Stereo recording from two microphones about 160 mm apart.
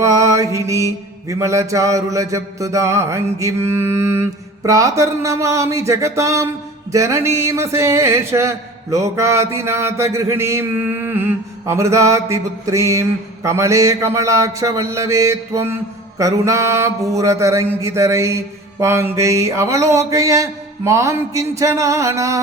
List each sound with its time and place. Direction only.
0.0 s mantra: 20° right (ahead or behind)
6.9 s speech: 20° right (ahead or behind)